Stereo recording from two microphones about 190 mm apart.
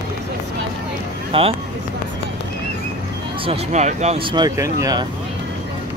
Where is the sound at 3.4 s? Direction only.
35° right (ahead or behind); by 5.0 s 15° right (ahead or behind).